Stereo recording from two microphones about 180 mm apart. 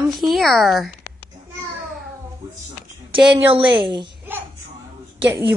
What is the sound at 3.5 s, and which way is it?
Speech, 25° right (ahead or behind).